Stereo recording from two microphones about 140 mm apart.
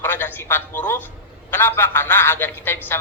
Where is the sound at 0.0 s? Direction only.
15° left (ahead or behind).